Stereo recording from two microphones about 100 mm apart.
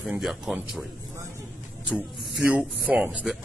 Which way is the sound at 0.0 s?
5° right (ahead or behind).